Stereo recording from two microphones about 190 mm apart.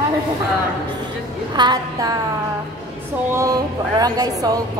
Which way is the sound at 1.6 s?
20° right (ahead or behind).